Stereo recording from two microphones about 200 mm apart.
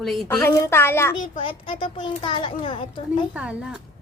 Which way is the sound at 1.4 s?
25° left (ahead or behind).